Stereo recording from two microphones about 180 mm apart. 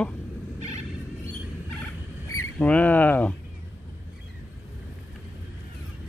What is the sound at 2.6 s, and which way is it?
Speech, 10° left (ahead or behind).